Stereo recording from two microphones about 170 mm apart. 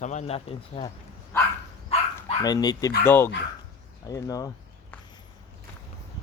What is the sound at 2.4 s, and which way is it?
Speech, 25° left (ahead or behind).